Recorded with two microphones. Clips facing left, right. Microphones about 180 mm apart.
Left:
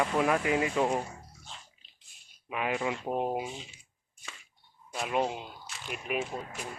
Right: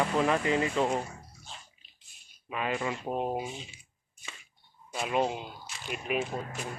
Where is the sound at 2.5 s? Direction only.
10° left (ahead or behind).